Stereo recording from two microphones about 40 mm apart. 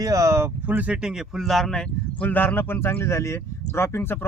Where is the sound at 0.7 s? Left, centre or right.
Right.